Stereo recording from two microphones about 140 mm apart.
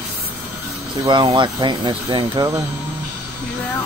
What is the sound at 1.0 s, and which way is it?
Speech, 35° right (ahead or behind).